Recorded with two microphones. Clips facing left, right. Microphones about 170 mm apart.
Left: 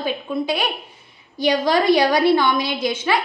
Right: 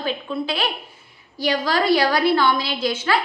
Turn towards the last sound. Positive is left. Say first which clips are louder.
# left 1 dB
turn(degrees=15)  # may be behind; listen again after turning